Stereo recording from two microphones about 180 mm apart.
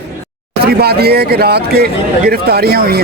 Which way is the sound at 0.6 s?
60° right (ahead or behind).